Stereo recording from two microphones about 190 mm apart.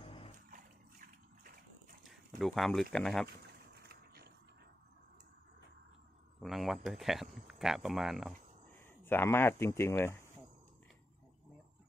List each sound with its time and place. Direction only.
0.0 s dog: 30° left (ahead or behind)
2.0 s speech: centre (ahead or behind)
3.9 s ratchet: 55° right (ahead or behind)
6.4 s speech: centre (ahead or behind)
8.7 s speech: 10° left (ahead or behind)